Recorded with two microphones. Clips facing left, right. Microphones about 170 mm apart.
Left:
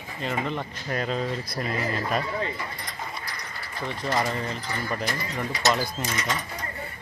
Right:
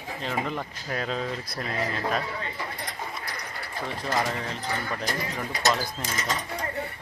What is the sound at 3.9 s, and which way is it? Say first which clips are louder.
Speech: left 2 dB; centre (ahead or behind).